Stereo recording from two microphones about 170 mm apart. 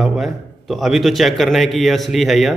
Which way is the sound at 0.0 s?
Centre (ahead or behind).